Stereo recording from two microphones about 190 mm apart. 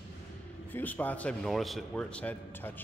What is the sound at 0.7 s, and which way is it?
Speech, 10° left (ahead or behind).